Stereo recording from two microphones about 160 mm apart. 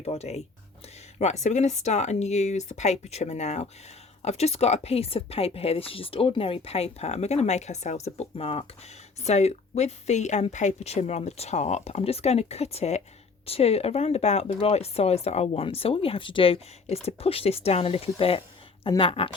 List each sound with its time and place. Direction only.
0.0 s speech: 40° left (ahead or behind)